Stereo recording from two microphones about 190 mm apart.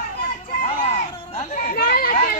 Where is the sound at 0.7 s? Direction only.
35° left (ahead or behind); by 2.1 s 50° left (ahead or behind).